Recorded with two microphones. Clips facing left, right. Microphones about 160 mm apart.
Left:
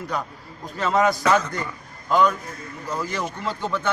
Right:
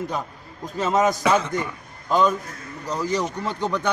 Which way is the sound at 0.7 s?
20° right (ahead or behind).